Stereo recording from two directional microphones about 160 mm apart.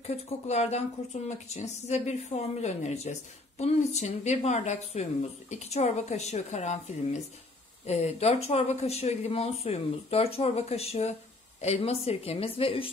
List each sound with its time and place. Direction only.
0.0 s speech: 40° left (ahead or behind)